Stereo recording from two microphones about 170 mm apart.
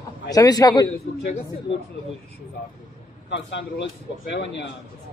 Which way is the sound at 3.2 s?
90° left.